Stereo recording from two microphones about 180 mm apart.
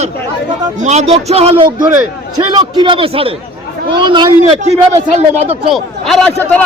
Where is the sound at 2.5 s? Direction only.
25° right (ahead or behind).